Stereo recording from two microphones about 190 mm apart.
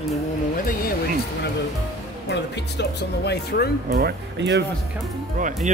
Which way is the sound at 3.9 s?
55° right (ahead or behind).